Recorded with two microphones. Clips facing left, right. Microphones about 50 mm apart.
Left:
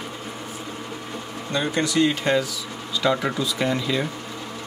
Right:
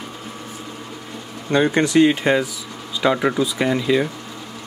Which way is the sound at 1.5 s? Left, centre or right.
Right.